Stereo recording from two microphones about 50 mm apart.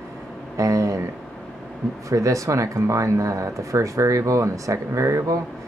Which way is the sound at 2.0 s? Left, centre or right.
Right.